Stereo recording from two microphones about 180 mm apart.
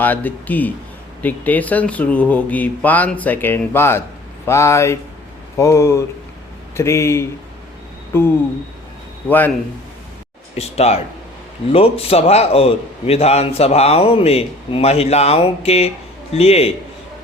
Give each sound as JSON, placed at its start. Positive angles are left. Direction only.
{"t": 0.0, "sound": "speech", "side_deg": 10}
{"t": 10.5, "sound": "a man's voice", "side_deg": 35}